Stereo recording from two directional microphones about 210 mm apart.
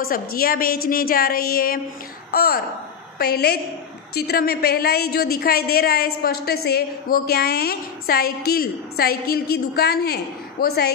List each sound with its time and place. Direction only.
0.0 s a woman's voice: 45° left (ahead or behind)